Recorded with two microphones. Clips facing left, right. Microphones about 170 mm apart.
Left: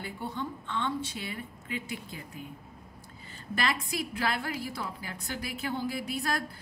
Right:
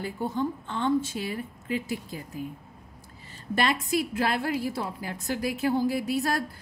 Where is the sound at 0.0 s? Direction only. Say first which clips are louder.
Right 7 dB; 45° right (ahead or behind).